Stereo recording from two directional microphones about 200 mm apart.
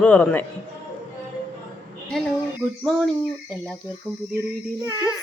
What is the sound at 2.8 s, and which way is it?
Cricket, centre (ahead or behind).